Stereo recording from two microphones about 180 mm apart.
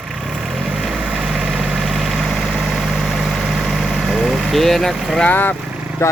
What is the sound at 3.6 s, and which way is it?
Vehicle, centre (ahead or behind).